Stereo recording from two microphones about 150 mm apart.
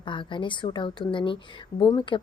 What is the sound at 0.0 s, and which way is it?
A woman's voice, 35° left (ahead or behind).